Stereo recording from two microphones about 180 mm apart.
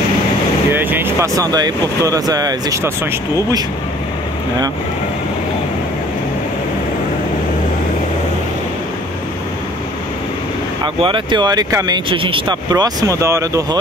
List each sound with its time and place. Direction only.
0.7 s speech: 10° right (ahead or behind)
10.8 s speech: 30° right (ahead or behind)